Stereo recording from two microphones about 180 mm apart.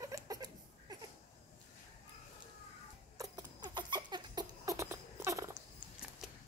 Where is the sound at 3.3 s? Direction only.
25° right (ahead or behind).